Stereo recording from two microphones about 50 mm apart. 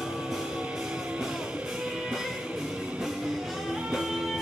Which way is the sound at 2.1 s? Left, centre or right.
Centre.